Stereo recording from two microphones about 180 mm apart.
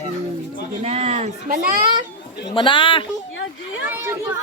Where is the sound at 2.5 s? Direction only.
25° left (ahead or behind).